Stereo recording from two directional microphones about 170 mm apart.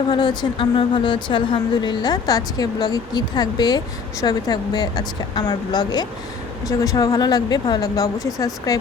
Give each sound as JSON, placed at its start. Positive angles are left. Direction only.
{"t": 0.1, "sound": "a woman's voice", "side_deg": 25}